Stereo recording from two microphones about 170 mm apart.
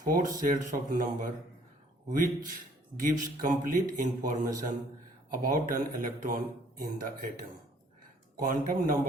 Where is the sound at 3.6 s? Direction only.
55° right (ahead or behind).